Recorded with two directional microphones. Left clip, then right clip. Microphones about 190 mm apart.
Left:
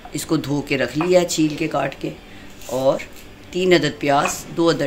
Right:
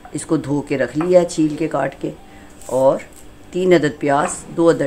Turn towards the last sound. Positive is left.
turn(degrees=-25)  # may be behind; listen again after turning